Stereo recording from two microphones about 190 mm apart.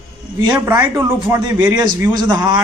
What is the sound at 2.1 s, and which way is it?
Speech, 20° right (ahead or behind).